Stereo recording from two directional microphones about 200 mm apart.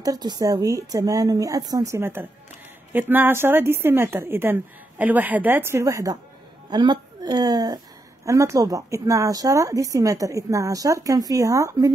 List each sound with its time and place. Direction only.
0.0 s a woman's voice: 20° right (ahead or behind)